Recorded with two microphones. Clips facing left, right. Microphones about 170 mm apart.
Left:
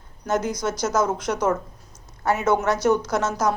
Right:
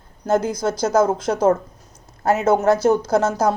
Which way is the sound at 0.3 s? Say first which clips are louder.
Right 4 dB; 30° right (ahead or behind).